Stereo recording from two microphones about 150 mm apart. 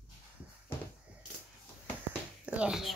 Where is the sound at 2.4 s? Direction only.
5° right (ahead or behind).